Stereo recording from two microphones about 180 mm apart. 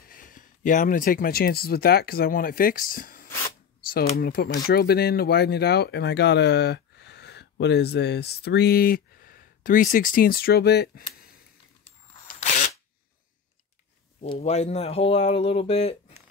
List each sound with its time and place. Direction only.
0.0 s speech: 50° left (ahead or behind)
12.3 s a sound: 45° left (ahead or behind)
14.2 s speech: 35° left (ahead or behind)